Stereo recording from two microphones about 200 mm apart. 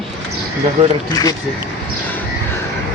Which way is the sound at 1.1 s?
20° left (ahead or behind).